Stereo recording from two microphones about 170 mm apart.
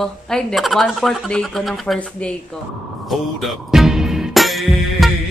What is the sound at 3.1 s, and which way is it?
Music, centre (ahead or behind).